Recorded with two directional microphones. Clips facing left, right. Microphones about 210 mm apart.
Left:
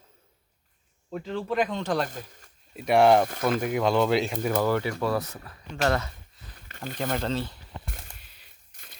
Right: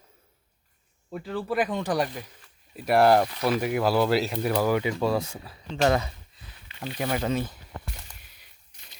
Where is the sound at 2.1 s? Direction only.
45° left (ahead or behind).